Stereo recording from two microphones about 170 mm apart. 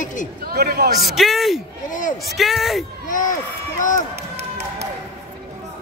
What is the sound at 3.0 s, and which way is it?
Speech, 50° left (ahead or behind).